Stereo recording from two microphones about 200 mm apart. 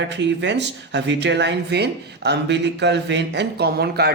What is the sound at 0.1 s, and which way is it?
Speech, 60° right (ahead or behind).